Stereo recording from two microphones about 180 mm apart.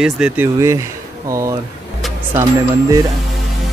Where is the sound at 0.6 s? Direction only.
15° right (ahead or behind).